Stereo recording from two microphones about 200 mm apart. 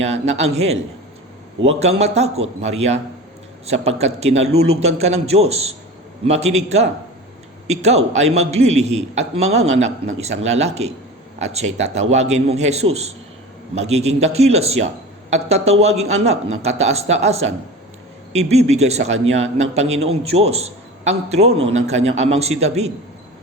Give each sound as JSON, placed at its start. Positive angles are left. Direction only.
{"t": 0.0, "sound": "a man's voice", "side_deg": -30}